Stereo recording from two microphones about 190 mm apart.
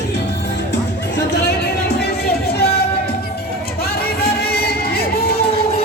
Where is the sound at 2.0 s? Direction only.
55° left (ahead or behind).